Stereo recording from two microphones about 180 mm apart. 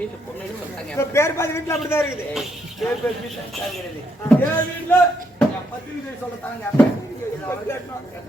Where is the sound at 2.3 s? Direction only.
Centre (ahead or behind).